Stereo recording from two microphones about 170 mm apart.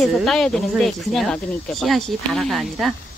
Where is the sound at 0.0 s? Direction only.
Centre (ahead or behind).